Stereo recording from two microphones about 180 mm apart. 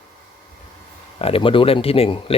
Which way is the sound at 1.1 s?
30° left (ahead or behind).